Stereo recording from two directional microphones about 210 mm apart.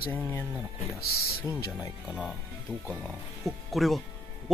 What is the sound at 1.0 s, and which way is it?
Speech, 45° left (ahead or behind).